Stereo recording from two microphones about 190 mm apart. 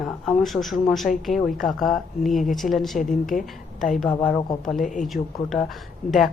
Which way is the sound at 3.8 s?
Centre (ahead or behind).